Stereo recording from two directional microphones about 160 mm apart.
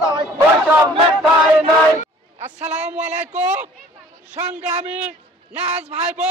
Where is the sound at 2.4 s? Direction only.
45° right (ahead or behind).